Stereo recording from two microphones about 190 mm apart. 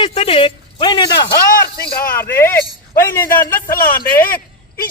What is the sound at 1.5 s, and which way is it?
Speech, 50° left (ahead or behind).